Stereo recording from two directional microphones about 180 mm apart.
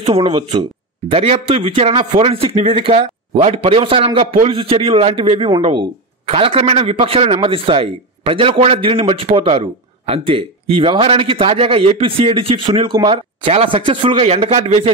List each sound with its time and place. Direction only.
0.0 s a man's voice: 30° right (ahead or behind)